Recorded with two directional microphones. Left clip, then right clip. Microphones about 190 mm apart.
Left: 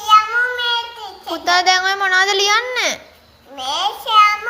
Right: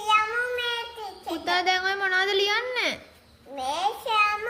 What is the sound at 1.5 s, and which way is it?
A child's voice, 20° right (ahead or behind).